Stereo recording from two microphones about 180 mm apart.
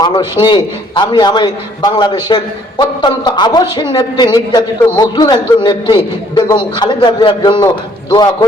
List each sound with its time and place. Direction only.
0.0 s a man's voice: 25° left (ahead or behind)